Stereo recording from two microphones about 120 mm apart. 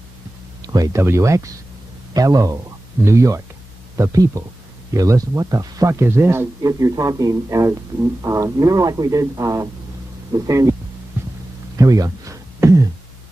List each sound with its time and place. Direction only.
0.7 s speech: 25° right (ahead or behind)
11.2 s hum: 20° right (ahead or behind)
11.7 s a sound: 30° right (ahead or behind)